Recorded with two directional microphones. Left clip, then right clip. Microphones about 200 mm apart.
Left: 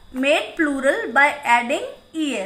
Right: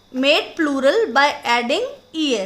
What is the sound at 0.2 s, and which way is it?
A woman's voice, 50° right (ahead or behind).